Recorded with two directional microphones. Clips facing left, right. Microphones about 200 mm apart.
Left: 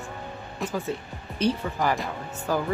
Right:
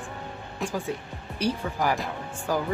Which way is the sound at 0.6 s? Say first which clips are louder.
Left 1 dB; centre (ahead or behind).